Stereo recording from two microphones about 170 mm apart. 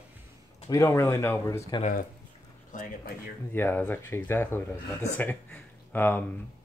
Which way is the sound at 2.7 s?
55° left (ahead or behind).